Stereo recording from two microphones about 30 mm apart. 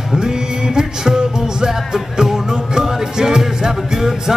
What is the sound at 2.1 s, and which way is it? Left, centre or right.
Music, centre.